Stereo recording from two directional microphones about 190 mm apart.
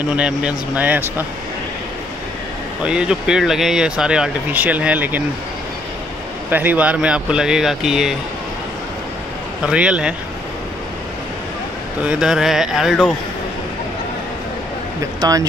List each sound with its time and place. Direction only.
0.1 s speech: 5° right (ahead or behind)
2.8 s speech: 5° right (ahead or behind)
6.5 s speech: 10° right (ahead or behind)
9.7 s speech: 5° right (ahead or behind)
12.0 s speech: 5° right (ahead or behind)
15.1 s speech: 20° right (ahead or behind)